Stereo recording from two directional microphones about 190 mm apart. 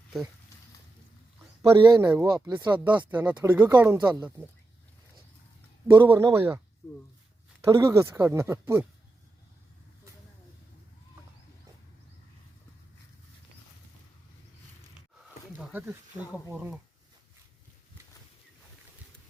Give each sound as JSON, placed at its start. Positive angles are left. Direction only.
{"t": 1.6, "sound": "speech", "side_deg": -25}
{"t": 3.1, "sound": "speech", "side_deg": -10}
{"t": 3.9, "sound": "speech", "side_deg": -20}
{"t": 5.9, "sound": "speech", "side_deg": -25}
{"t": 7.7, "sound": "speech", "side_deg": -15}
{"t": 15.2, "sound": "a sound", "side_deg": 0}
{"t": 16.5, "sound": "speech", "side_deg": -10}